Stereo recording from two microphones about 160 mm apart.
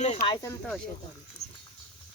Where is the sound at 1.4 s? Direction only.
45° left (ahead or behind).